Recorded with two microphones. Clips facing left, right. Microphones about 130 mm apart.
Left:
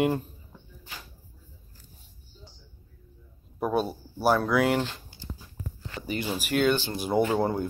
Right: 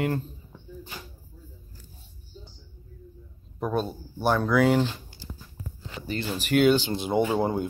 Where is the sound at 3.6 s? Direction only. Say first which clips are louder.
Left 1 dB; 5° left (ahead or behind).